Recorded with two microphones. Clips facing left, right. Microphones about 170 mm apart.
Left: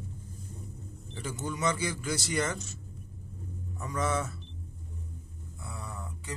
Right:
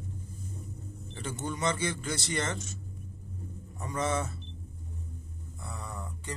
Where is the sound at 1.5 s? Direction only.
30° right (ahead or behind).